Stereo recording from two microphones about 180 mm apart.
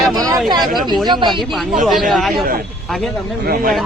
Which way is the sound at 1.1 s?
25° right (ahead or behind).